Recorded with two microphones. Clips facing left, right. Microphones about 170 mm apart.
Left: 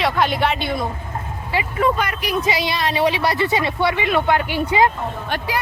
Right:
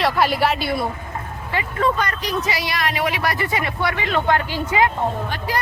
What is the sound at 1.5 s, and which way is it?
Speech, 10° left (ahead or behind).